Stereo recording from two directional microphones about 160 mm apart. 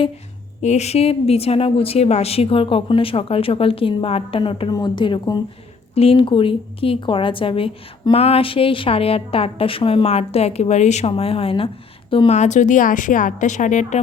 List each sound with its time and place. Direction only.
0.6 s a woman's voice: 45° left (ahead or behind)